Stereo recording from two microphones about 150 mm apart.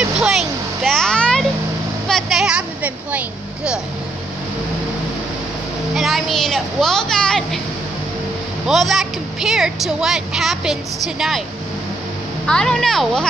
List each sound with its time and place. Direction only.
0.0 s vehicle: centre (ahead or behind)
2.0 s speech: centre (ahead or behind)
5.9 s a woman's voice: centre (ahead or behind)
8.6 s a woman's voice: centre (ahead or behind)
12.4 s a woman's voice: 5° left (ahead or behind)